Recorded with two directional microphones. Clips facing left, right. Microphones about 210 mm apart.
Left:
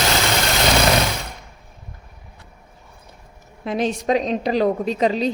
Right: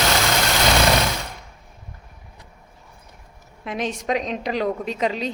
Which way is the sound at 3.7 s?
35° left (ahead or behind).